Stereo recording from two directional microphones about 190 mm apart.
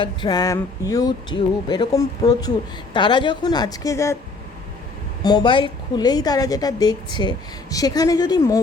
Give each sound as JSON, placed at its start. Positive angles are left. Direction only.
{"t": 0.0, "sound": "a woman's voice", "side_deg": 25}
{"t": 5.2, "sound": "a woman's voice", "side_deg": 25}